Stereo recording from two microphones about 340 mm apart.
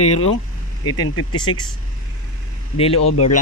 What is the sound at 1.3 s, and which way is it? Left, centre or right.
Speech, centre.